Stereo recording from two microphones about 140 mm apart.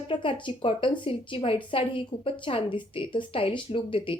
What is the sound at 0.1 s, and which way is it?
A woman's voice, 35° left (ahead or behind).